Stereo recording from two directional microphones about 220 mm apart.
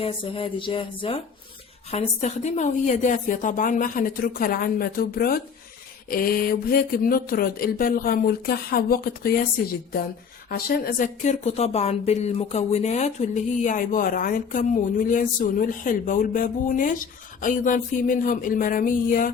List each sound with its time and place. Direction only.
0.0 s speech: 25° left (ahead or behind); by 9.4 s 40° left (ahead or behind)
10.5 s speech: 45° left (ahead or behind)